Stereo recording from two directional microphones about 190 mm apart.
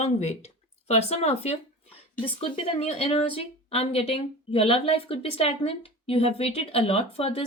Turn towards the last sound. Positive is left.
turn(degrees=30)  # may be behind; listen again after turning